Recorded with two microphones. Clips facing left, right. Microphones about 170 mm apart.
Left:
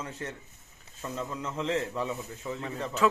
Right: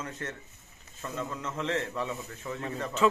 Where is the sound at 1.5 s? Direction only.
10° left (ahead or behind).